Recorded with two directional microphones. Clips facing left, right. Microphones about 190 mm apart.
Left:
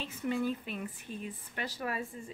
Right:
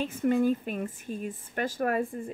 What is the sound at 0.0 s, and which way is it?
Speech, 50° right (ahead or behind).